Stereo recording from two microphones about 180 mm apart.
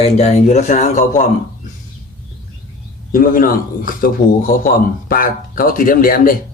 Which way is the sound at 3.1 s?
55° left (ahead or behind).